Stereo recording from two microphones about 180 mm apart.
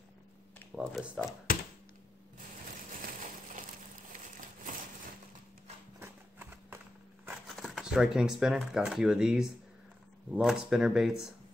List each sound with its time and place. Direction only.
0.7 s speech: 5° right (ahead or behind)
1.5 s a sound: 50° left (ahead or behind)
5.9 s horse: 10° right (ahead or behind)
7.4 s speech: centre (ahead or behind)